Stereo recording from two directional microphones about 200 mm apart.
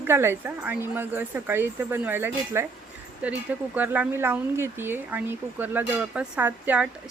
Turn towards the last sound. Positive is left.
turn(degrees=-10)  # may be behind; listen again after turning